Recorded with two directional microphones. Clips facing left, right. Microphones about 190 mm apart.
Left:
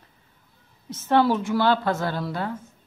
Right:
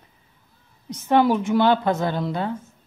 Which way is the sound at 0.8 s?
15° right (ahead or behind).